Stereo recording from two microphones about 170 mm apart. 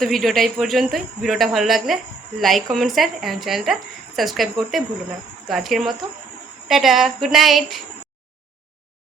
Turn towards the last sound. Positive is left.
turn(degrees=0)  # may be behind; listen again after turning